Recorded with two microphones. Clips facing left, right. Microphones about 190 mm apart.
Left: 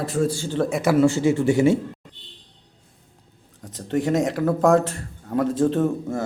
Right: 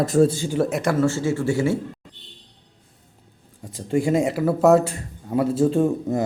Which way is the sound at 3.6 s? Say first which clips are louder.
Right 1 dB; 10° right (ahead or behind).